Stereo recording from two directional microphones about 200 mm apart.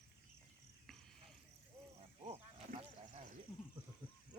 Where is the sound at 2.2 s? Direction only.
30° right (ahead or behind).